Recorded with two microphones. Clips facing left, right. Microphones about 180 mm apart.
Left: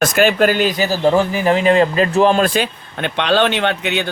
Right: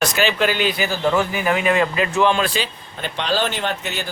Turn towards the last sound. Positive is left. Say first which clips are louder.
# left 6 dB
turn(degrees=70)  # may be behind; listen again after turning